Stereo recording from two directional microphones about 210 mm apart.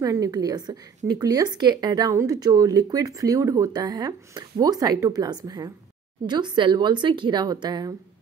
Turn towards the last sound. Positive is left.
turn(degrees=-20)  # may be behind; listen again after turning